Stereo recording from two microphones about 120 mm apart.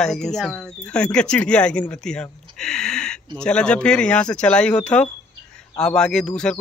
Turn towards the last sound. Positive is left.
turn(degrees=5)  # may be behind; listen again after turning